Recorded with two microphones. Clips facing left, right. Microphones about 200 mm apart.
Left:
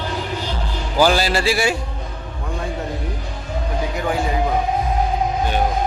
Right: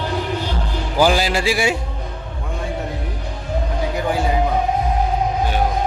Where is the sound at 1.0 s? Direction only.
15° right (ahead or behind).